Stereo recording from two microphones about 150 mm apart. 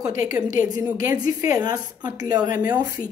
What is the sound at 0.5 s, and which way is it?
Speech, 60° left (ahead or behind).